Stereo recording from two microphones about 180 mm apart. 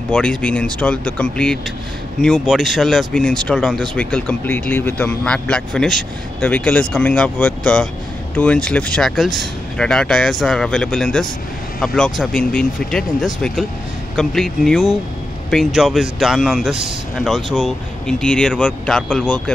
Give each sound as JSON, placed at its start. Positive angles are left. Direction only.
{"t": 0.1, "sound": "speech", "side_deg": 5}